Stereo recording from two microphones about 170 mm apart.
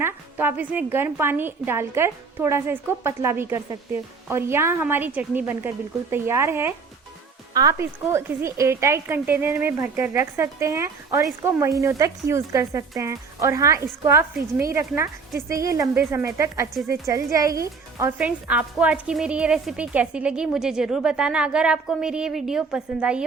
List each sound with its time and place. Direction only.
0.0 s speech: 15° right (ahead or behind)
18.2 s a woman's voice: 10° right (ahead or behind)